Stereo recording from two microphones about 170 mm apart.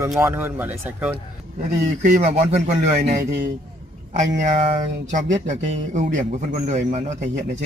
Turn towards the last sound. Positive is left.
turn(degrees=-45)  # may be behind; listen again after turning